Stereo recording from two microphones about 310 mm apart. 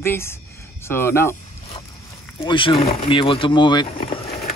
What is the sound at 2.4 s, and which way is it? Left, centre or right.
Speech, centre.